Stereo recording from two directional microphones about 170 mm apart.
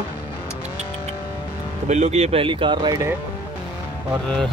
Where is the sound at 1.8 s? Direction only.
40° right (ahead or behind); by 3.1 s 20° right (ahead or behind).